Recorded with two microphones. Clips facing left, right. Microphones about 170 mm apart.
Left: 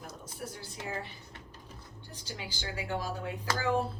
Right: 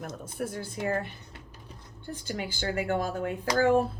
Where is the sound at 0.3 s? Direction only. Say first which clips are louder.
Right 10 dB; 50° right (ahead or behind).